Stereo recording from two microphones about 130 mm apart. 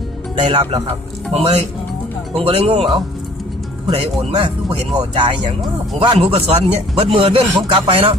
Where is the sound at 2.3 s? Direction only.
45° right (ahead or behind).